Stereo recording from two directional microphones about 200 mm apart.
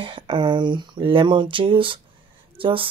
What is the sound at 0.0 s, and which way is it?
Speech, 25° right (ahead or behind).